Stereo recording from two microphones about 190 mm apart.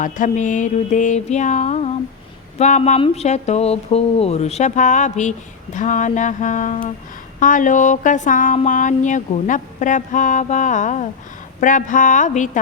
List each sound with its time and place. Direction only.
0.0 s speech: 40° left (ahead or behind)